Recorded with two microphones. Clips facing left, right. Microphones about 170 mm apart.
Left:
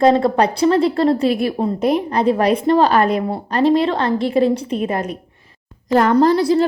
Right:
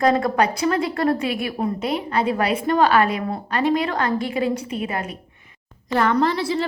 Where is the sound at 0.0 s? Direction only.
25° left (ahead or behind).